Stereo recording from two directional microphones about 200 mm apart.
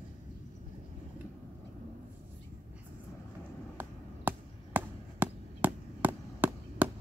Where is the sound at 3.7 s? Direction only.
10° right (ahead or behind).